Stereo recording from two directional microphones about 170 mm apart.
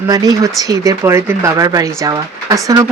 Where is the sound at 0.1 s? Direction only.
20° right (ahead or behind).